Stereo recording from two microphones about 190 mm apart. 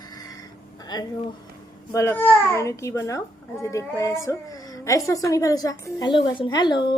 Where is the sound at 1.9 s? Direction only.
15° left (ahead or behind).